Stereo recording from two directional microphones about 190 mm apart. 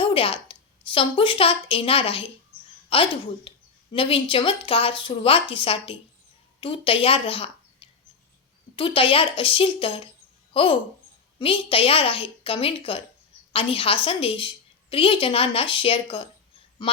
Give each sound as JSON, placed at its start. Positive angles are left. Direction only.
{"t": 0.0, "sound": "a woman's voice", "side_deg": 30}